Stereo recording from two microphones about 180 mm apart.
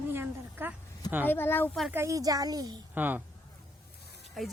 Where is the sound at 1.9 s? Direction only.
15° right (ahead or behind).